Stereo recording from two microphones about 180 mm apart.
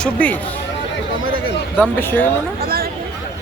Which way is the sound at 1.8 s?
10° left (ahead or behind).